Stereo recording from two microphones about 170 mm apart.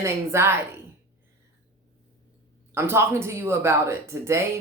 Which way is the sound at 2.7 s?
15° right (ahead or behind).